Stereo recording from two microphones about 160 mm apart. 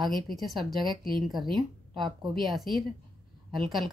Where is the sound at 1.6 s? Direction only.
30° right (ahead or behind).